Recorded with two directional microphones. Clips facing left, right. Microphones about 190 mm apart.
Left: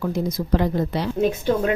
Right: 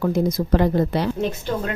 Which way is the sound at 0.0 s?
50° right (ahead or behind).